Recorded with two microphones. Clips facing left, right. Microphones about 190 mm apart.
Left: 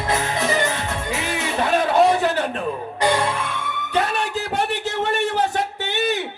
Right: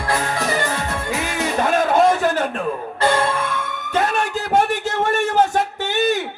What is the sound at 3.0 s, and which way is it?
Music, 15° left (ahead or behind).